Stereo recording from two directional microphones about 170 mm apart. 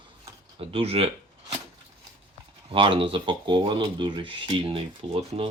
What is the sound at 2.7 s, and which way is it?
Speech, 30° right (ahead or behind).